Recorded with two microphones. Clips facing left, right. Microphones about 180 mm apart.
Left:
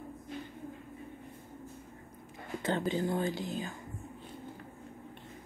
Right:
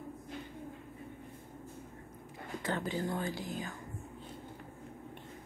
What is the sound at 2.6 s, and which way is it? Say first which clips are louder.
Speech: left 4 dB; 20° left (ahead or behind).